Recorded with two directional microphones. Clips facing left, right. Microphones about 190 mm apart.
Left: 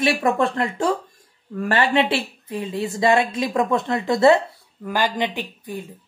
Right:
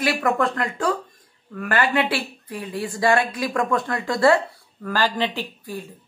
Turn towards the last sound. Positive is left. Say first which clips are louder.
# left 1 dB
turn(degrees=20)  # may be behind; listen again after turning